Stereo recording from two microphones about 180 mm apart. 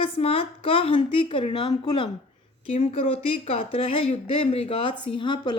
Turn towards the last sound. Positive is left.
turn(degrees=25)  # may be behind; listen again after turning